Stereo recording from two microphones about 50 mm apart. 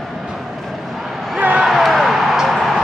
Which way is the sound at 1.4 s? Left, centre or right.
Right.